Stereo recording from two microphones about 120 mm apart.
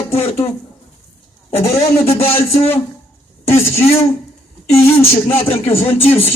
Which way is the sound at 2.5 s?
60° left (ahead or behind).